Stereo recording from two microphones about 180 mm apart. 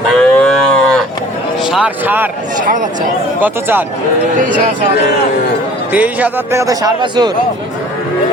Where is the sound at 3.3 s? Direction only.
10° right (ahead or behind).